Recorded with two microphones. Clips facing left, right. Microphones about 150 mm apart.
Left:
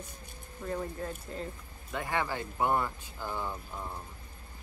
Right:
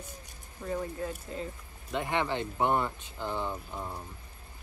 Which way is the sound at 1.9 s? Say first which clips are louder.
Right 3 dB; 20° right (ahead or behind).